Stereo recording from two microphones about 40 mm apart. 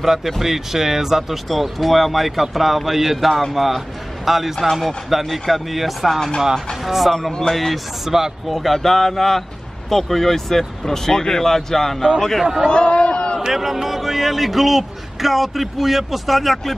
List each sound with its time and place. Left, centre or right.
0.0 s a man's voice: centre
7.2 s a man's voice: centre
8.5 s speech: centre
12.6 s a sound: left
13.5 s a man's voice: centre